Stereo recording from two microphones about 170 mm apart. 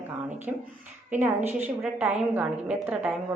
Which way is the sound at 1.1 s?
10° right (ahead or behind).